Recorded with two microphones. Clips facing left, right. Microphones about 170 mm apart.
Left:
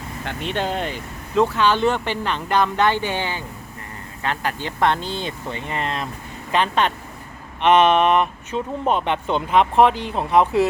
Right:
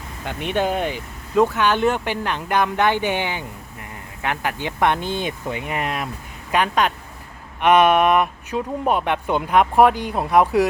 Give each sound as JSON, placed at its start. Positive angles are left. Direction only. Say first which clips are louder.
{"t": 0.3, "sound": "speech", "louder": "right 3 dB", "side_deg": -15}